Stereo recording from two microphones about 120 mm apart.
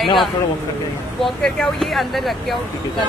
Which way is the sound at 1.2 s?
5° left (ahead or behind).